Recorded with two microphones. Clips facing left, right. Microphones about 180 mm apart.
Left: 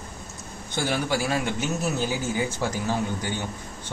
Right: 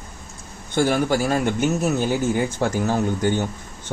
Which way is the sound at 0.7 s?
50° right (ahead or behind).